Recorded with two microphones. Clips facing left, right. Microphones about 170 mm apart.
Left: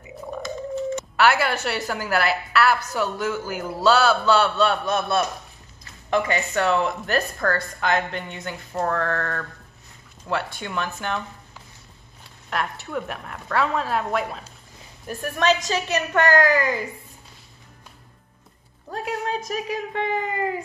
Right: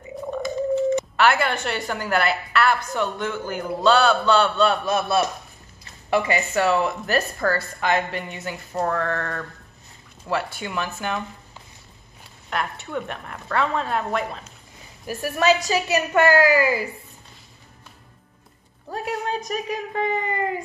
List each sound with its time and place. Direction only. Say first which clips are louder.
1.1 s a woman's voice: even; 5° left (ahead or behind)
12.4 s a woman's voice: even; centre (ahead or behind)
18.9 s a woman's voice: even; centre (ahead or behind)